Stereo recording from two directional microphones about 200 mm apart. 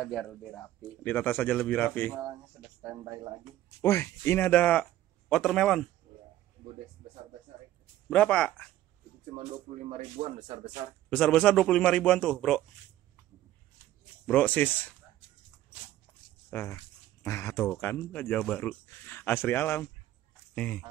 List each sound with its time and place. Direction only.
0.0 s speech: centre (ahead or behind)
2.8 s speech: 15° right (ahead or behind)
3.8 s a man's voice: 15° left (ahead or behind)
8.1 s a man's voice: 5° left (ahead or behind)
9.3 s speech: 35° right (ahead or behind)
10.2 s speech: 45° right (ahead or behind)
11.1 s a man's voice: 5° left (ahead or behind)
14.2 s speech: 5° left (ahead or behind)
16.4 s speech: 15° left (ahead or behind)
20.5 s fowl: 5° left (ahead or behind)